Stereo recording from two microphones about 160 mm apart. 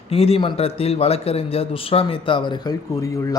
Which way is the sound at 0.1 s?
40° left (ahead or behind).